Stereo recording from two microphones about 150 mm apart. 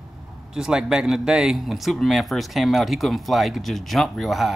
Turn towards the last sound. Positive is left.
turn(degrees=0)  # may be behind; listen again after turning